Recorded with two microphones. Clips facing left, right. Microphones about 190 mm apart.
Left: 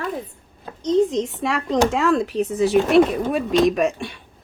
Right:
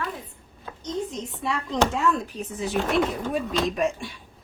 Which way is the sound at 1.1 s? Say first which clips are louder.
Left 7 dB; 85° left.